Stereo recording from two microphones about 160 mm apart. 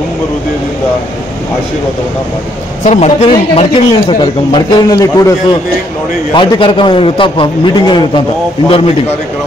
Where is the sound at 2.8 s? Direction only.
40° left (ahead or behind); by 8.2 s 25° left (ahead or behind).